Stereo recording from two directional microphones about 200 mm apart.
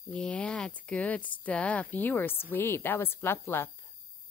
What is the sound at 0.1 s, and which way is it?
Speech, 5° left (ahead or behind).